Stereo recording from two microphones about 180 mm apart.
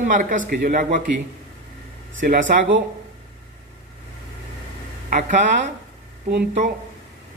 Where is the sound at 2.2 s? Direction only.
55° right (ahead or behind).